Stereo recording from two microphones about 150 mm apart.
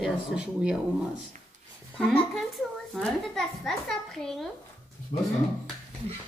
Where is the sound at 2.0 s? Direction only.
10° left (ahead or behind).